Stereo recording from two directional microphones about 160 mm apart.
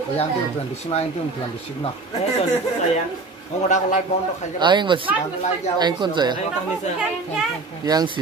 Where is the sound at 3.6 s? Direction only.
50° left (ahead or behind).